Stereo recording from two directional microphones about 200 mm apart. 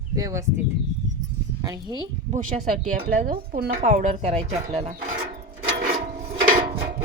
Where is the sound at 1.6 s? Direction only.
20° right (ahead or behind).